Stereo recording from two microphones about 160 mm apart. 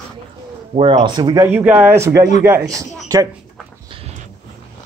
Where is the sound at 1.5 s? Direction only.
10° right (ahead or behind).